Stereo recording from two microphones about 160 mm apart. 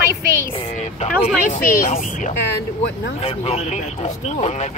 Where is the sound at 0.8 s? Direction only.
45° left (ahead or behind).